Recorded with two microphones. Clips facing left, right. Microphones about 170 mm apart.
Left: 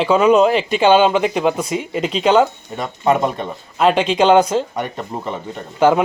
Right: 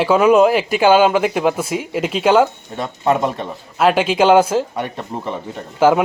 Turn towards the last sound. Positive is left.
turn(degrees=-5)  # may be behind; listen again after turning